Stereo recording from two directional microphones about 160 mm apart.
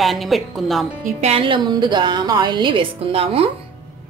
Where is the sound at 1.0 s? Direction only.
40° right (ahead or behind).